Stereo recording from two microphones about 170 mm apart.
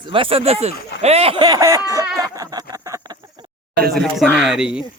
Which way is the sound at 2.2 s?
20° right (ahead or behind).